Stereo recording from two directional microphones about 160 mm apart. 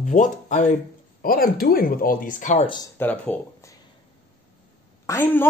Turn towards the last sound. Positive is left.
turn(degrees=15)  # may be behind; listen again after turning